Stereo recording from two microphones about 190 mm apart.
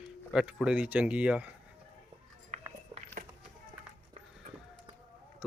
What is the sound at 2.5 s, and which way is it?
Walk, 35° right (ahead or behind).